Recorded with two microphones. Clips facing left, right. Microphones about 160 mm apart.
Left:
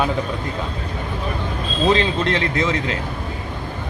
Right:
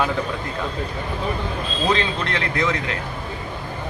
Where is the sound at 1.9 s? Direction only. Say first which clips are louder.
Left 4 dB; 20° left (ahead or behind).